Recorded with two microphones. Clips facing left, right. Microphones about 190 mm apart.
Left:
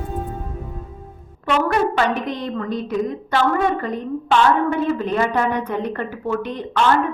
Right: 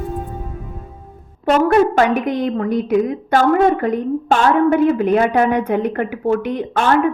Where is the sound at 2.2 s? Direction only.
55° right (ahead or behind).